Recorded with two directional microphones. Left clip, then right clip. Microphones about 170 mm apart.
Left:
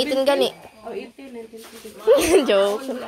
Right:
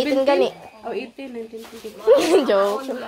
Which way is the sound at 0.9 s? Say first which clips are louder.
Right 4 dB; 45° right (ahead or behind).